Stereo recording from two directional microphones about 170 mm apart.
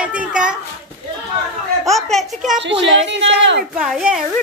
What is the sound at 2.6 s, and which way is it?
A woman's voice, 90° right.